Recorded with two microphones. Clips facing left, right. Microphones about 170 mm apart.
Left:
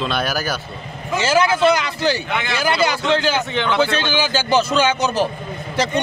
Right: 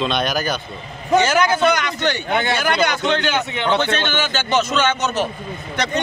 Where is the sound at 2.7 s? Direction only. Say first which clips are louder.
Left 3 dB; 5° left (ahead or behind).